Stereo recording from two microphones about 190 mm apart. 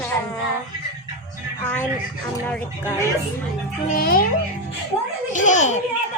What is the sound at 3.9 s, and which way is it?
Speech, 50° left (ahead or behind).